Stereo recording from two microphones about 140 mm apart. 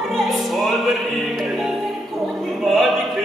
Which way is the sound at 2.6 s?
Centre (ahead or behind).